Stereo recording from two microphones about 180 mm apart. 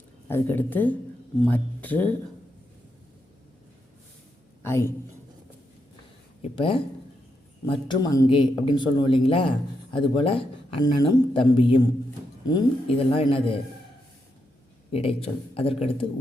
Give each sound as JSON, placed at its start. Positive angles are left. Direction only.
{"t": 0.3, "sound": "speech", "side_deg": 10}
{"t": 4.6, "sound": "speech", "side_deg": 15}
{"t": 6.4, "sound": "a man's voice", "side_deg": 30}
{"t": 14.9, "sound": "a man's voice", "side_deg": 30}